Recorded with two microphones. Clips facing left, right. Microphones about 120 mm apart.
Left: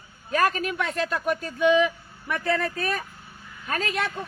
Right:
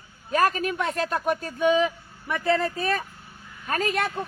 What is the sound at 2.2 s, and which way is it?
Speech, 20° right (ahead or behind).